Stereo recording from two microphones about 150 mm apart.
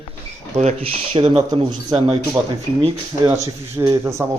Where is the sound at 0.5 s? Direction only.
45° right (ahead or behind).